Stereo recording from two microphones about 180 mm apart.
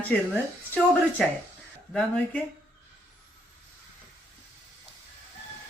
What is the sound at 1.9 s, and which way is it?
Speech, 5° left (ahead or behind).